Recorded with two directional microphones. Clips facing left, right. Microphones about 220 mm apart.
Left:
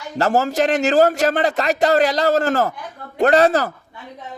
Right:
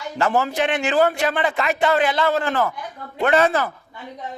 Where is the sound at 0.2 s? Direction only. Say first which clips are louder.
Left 3 dB; 40° left (ahead or behind).